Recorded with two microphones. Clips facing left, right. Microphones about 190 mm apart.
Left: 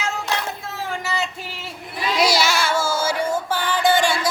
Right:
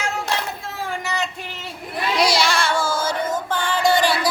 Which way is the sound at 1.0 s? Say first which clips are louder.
Left 1 dB; 5° left (ahead or behind).